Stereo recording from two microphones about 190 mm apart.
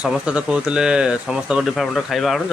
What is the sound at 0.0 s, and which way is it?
Speech, 5° right (ahead or behind).